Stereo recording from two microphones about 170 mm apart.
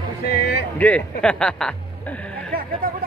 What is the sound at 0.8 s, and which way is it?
Speech, 10° left (ahead or behind).